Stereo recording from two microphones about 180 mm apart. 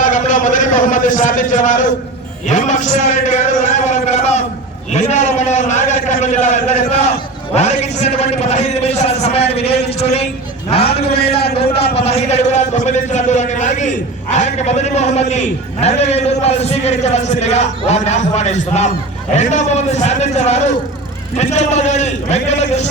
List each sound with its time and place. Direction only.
0.0 s a sound: 45° left (ahead or behind)
2.5 s a man's voice: 40° left (ahead or behind)
10.8 s a man's voice: 60° left (ahead or behind)
11.9 s a man's voice: 35° left (ahead or behind)